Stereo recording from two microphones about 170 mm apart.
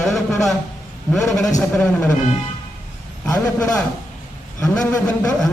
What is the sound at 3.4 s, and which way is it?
A man's voice, 20° left (ahead or behind).